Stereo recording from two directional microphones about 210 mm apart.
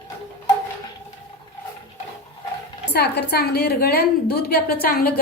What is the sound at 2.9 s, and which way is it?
Speech, 50° left (ahead or behind).